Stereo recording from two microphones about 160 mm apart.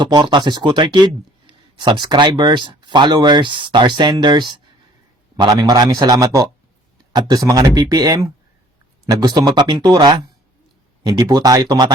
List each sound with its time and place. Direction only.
0.0 s speech: 30° right (ahead or behind)